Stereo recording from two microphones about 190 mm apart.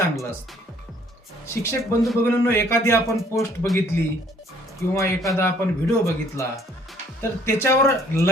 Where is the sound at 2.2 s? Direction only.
15° left (ahead or behind).